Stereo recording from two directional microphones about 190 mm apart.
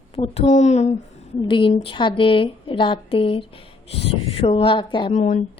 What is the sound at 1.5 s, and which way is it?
A woman's voice, 25° left (ahead or behind).